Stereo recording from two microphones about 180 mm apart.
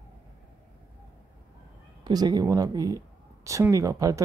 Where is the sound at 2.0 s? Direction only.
20° right (ahead or behind).